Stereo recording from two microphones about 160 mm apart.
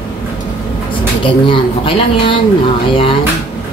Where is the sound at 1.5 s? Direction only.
30° left (ahead or behind).